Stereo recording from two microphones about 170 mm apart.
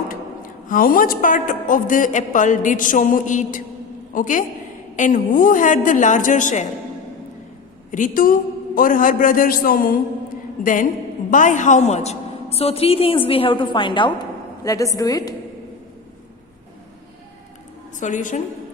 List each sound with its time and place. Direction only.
0.7 s a man's voice: 55° left (ahead or behind)
7.9 s a man's voice: 50° left (ahead or behind); by 15.4 s 20° left (ahead or behind)
17.9 s a woman's voice: 45° left (ahead or behind)